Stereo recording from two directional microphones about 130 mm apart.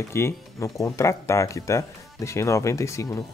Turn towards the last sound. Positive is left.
turn(degrees=25)  # may be behind; listen again after turning